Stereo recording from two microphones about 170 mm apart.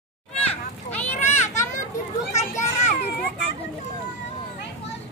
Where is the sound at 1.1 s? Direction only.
40° left (ahead or behind).